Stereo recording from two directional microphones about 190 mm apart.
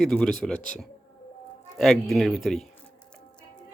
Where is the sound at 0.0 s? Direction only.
5° left (ahead or behind).